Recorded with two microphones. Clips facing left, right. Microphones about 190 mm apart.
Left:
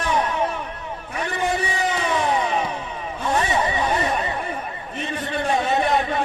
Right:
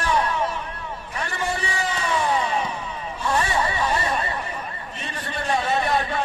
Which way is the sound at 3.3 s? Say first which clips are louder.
Left 2 dB; 20° left (ahead or behind).